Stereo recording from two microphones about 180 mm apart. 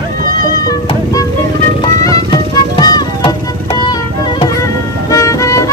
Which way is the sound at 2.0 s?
20° left (ahead or behind).